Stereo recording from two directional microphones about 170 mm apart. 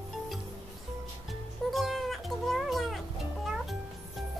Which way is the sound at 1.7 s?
Centre (ahead or behind).